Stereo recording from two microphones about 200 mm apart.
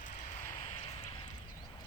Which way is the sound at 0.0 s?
40° left (ahead or behind).